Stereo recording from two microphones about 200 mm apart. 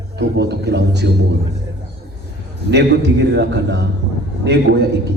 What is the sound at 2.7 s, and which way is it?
A man's voice, 60° right (ahead or behind).